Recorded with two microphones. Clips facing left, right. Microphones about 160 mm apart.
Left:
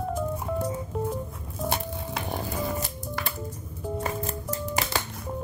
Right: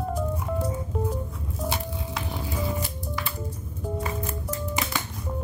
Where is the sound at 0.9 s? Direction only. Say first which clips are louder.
Right 1 dB; centre (ahead or behind).